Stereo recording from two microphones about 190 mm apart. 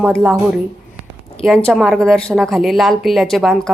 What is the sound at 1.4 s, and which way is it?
A woman's voice, centre (ahead or behind).